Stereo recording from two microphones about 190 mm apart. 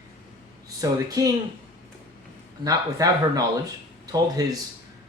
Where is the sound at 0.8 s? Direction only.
20° right (ahead or behind).